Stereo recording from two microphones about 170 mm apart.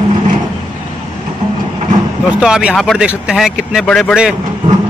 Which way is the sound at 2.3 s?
5° right (ahead or behind).